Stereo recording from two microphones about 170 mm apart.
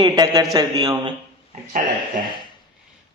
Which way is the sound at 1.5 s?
50° right (ahead or behind).